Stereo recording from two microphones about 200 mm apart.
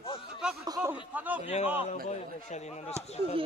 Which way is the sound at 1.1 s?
10° right (ahead or behind).